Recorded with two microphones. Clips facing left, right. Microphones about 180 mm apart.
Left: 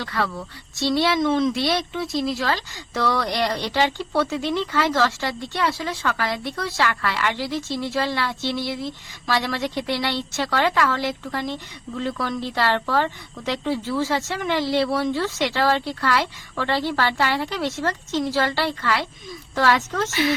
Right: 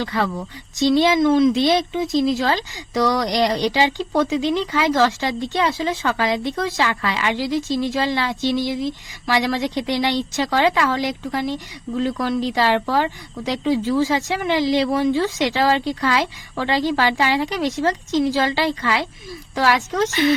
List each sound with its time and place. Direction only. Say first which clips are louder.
0.0 s speech: right 4 dB; 20° right (ahead or behind)